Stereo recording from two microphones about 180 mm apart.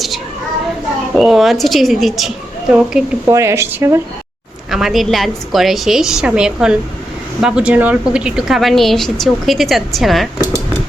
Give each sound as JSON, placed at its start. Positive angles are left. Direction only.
{"t": 1.1, "sound": "a woman's voice", "side_deg": 0}
{"t": 3.2, "sound": "speech", "side_deg": -15}
{"t": 4.7, "sound": "a woman's voice", "side_deg": 0}